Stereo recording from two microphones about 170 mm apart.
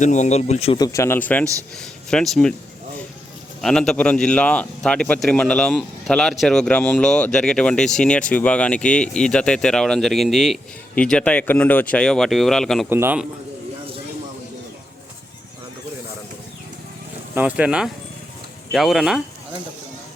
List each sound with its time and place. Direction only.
0.0 s speech: 45° left (ahead or behind)
0.8 s speech: 15° left (ahead or behind)
3.6 s speech: 5° left (ahead or behind)
12.9 s speech: 10° right (ahead or behind)
17.3 s speech: 10° right (ahead or behind)